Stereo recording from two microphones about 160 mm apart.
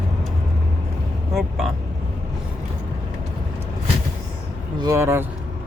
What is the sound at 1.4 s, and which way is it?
Vehicle, centre (ahead or behind).